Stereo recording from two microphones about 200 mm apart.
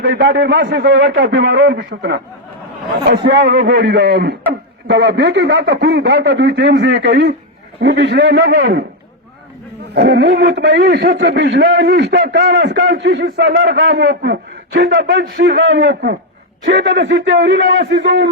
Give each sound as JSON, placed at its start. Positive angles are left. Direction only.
{"t": 0.0, "sound": "a man's voice", "side_deg": -55}
{"t": 9.9, "sound": "a man's voice", "side_deg": -55}